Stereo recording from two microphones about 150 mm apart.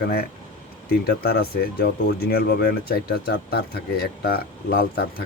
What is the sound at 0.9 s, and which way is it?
Speech, 90° left.